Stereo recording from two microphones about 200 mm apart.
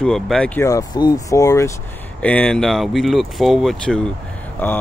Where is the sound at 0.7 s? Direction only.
20° left (ahead or behind).